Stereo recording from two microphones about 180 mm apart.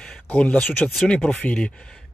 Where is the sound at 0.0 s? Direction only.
5° left (ahead or behind).